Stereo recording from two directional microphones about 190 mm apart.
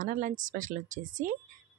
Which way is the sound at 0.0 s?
40° right (ahead or behind).